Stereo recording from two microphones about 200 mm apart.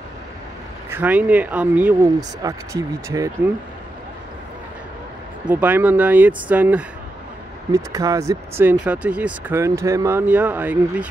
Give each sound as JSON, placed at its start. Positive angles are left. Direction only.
{"t": 0.8, "sound": "speech", "side_deg": -10}
{"t": 5.5, "sound": "speech", "side_deg": -10}